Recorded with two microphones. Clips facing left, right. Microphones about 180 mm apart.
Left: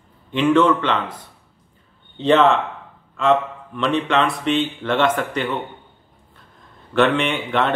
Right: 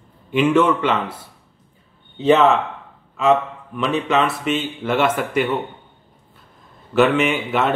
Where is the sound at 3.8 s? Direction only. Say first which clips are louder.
Even; 5° right (ahead or behind).